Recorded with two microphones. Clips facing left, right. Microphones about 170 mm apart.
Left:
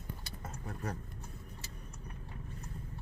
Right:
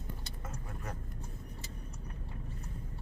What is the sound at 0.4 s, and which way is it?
Vehicle, 35° left (ahead or behind).